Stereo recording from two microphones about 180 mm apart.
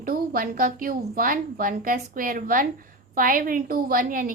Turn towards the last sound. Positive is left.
turn(degrees=-50)  # may be behind; listen again after turning